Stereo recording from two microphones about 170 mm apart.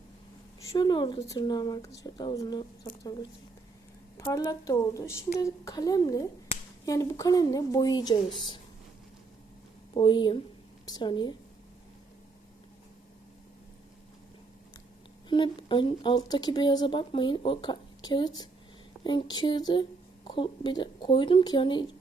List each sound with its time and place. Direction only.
0.6 s speech: 25° left (ahead or behind)
4.3 s speech: 20° left (ahead or behind)
9.9 s speech: 30° left (ahead or behind)
15.3 s speech: 30° left (ahead or behind)